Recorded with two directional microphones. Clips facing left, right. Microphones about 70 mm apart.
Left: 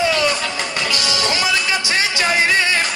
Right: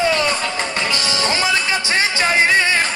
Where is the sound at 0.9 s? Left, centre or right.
Right.